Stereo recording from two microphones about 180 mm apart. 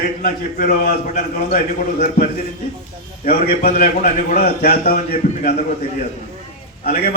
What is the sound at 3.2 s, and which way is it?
A man's voice, 45° left (ahead or behind).